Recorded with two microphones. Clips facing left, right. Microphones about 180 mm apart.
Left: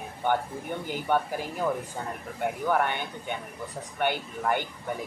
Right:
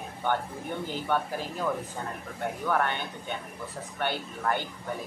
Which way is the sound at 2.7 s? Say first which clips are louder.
Left 1 dB; 15° left (ahead or behind).